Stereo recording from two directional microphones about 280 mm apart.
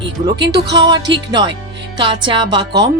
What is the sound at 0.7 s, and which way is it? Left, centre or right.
Speech, centre.